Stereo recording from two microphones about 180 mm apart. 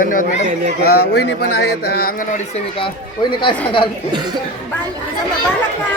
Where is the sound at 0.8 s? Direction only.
60° left (ahead or behind).